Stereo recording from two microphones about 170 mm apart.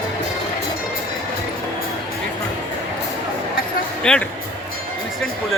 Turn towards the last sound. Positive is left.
turn(degrees=5)  # may be behind; listen again after turning